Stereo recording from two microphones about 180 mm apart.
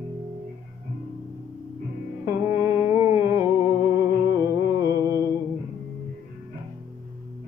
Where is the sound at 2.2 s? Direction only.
15° right (ahead or behind).